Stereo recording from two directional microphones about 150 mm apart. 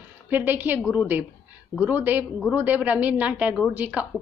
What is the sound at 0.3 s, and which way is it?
A woman's voice, 15° right (ahead or behind).